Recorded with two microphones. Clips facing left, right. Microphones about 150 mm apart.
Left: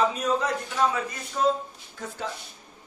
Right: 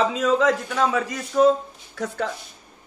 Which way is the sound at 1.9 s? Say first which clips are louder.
Right 9 dB; 75° right (ahead or behind).